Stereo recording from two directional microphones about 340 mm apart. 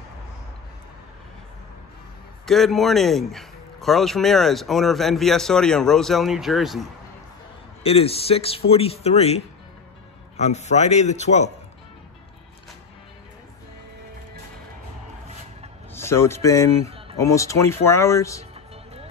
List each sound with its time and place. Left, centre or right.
2.4 s a man's voice: centre
7.8 s a man's voice: centre
15.9 s speech: centre